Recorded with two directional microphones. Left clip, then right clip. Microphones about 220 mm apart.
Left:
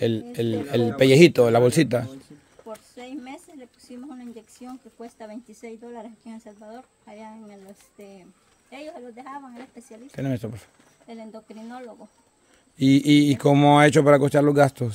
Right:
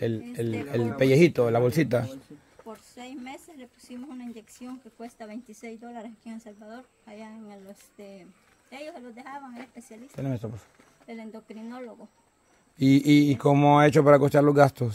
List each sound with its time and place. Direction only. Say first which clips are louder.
0.0 s speech: left 5 dB; 25° left (ahead or behind)
2.9 s a sound: left 3 dB; 10° right (ahead or behind)
4.4 s speech: left 2 dB; 10° right (ahead or behind)
10.1 s speech: left 4 dB; 20° left (ahead or behind)
11.1 s speech: left 2 dB; centre (ahead or behind)
13.4 s speech: left 5 dB; 20° left (ahead or behind)